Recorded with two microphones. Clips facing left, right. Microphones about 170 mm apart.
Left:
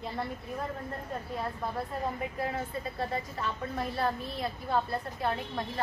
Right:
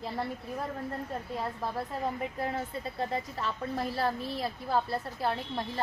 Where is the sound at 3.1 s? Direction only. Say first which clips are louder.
Right 1 dB; 30° right (ahead or behind).